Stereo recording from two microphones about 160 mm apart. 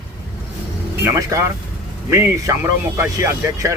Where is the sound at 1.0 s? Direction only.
20° right (ahead or behind).